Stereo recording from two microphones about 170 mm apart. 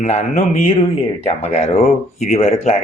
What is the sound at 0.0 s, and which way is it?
Mantra, 40° left (ahead or behind).